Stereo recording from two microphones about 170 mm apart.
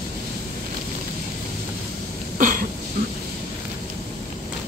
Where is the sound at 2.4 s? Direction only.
50° right (ahead or behind).